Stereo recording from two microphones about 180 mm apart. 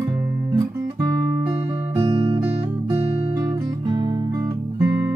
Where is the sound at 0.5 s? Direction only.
20° right (ahead or behind).